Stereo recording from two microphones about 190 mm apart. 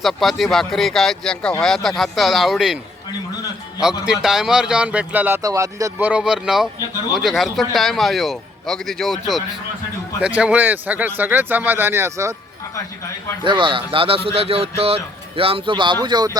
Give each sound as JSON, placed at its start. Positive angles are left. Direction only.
{"t": 0.0, "sound": "a man's voice", "side_deg": 0}
{"t": 3.8, "sound": "a man's voice", "side_deg": -5}
{"t": 13.4, "sound": "speech", "side_deg": -25}